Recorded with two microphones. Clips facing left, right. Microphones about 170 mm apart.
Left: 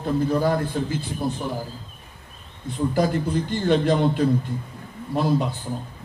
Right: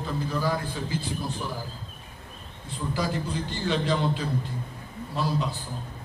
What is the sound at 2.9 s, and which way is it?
A man's voice, 55° left (ahead or behind).